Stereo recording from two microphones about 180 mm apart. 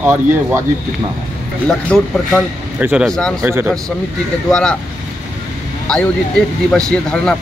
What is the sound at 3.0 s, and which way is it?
Speech, 5° left (ahead or behind).